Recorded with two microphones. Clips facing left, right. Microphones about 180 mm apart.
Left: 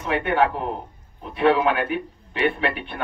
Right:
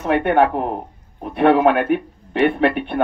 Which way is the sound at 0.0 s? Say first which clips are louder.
Right 5 dB; 55° right (ahead or behind).